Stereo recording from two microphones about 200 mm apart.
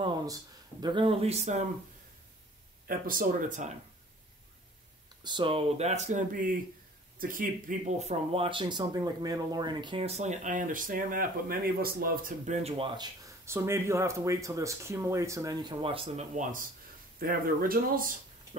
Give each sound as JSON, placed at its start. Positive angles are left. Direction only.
{"t": 0.0, "sound": "speech", "side_deg": -20}
{"t": 2.9, "sound": "speech", "side_deg": -45}
{"t": 5.2, "sound": "speech", "side_deg": -25}
{"t": 12.6, "sound": "speech", "side_deg": -25}
{"t": 17.2, "sound": "speech", "side_deg": -45}